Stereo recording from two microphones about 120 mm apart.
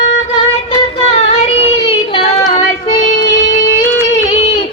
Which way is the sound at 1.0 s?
55° left (ahead or behind).